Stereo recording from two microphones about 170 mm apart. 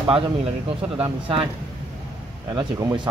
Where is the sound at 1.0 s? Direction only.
30° right (ahead or behind).